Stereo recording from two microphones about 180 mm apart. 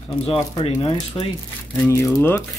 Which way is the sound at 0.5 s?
30° left (ahead or behind).